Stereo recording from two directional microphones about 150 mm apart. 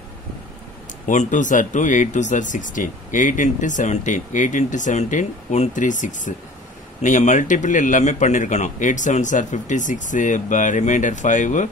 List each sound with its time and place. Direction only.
1.0 s speech: 60° left (ahead or behind)